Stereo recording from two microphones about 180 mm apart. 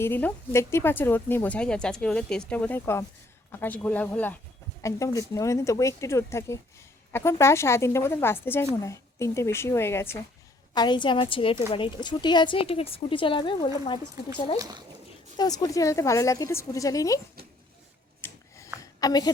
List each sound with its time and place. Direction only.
0.0 s speech: 10° left (ahead or behind)
10.8 s a woman's voice: 25° left (ahead or behind)
14.6 s speech: 20° right (ahead or behind)
15.4 s speech: 20° left (ahead or behind)
18.2 s filing: 15° left (ahead or behind)
18.8 s a sound: 20° left (ahead or behind)